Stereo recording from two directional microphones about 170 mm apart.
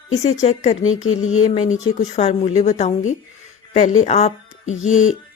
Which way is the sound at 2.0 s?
40° left (ahead or behind).